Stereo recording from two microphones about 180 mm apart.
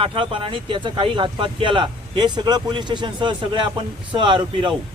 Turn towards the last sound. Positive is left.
turn(degrees=-25)  # may be behind; listen again after turning